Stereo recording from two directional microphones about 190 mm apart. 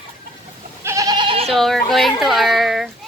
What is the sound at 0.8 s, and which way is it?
Goat, 15° right (ahead or behind).